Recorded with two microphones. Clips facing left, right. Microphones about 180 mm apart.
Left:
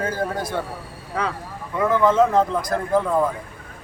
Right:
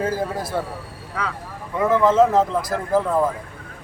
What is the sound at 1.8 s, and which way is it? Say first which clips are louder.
A man's voice: right 1 dB; 5° right (ahead or behind).